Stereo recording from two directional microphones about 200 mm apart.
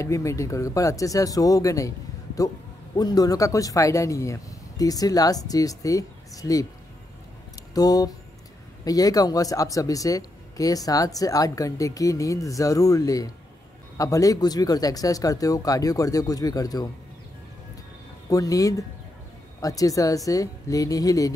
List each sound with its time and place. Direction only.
0.0 s a man's voice: 15° left (ahead or behind)
7.7 s a man's voice: 20° left (ahead or behind)
18.3 s a man's voice: 15° left (ahead or behind)